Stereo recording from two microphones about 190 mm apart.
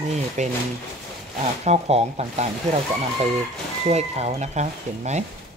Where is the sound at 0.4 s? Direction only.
40° right (ahead or behind).